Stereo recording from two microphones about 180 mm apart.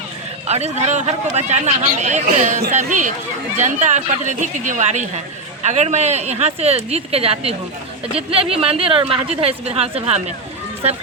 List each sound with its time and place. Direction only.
0.4 s speech: 35° right (ahead or behind)